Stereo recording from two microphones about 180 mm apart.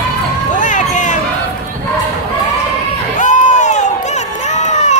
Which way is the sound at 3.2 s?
45° left (ahead or behind).